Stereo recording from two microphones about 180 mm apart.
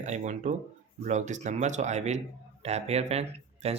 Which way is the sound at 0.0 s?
40° right (ahead or behind).